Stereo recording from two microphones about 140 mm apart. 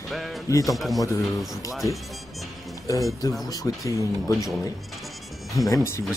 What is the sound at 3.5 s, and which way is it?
Speech, 25° left (ahead or behind).